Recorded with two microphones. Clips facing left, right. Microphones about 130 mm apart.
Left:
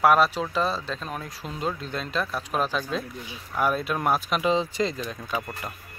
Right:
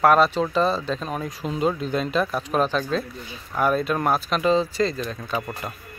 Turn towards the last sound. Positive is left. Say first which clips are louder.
# right 3 dB
turn(degrees=15)  # may be behind; listen again after turning